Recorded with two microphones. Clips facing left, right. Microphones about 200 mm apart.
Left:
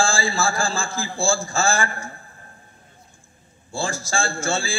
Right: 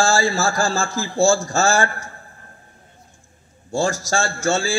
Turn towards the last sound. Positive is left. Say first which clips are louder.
# right 5 dB
turn(degrees=-40)  # may be behind; listen again after turning